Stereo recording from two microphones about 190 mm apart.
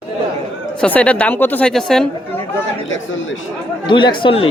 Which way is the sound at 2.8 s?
85° left.